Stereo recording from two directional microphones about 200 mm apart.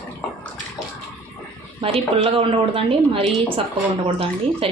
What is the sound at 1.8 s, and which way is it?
A woman's voice, 30° right (ahead or behind).